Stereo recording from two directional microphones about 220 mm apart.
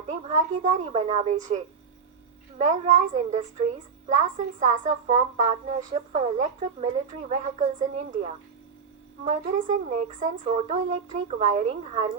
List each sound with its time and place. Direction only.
0.1 s a woman's voice: 30° right (ahead or behind)